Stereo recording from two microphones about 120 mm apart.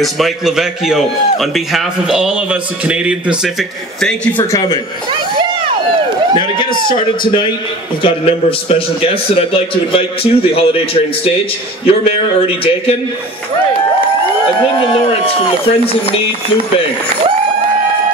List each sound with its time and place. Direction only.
0.0 s a man's voice: centre (ahead or behind)
4.0 s speech: 10° left (ahead or behind)
4.5 s a man's voice: 35° left (ahead or behind)
6.6 s a man's voice: 40° left (ahead or behind)
11.8 s a man's voice: 50° left (ahead or behind)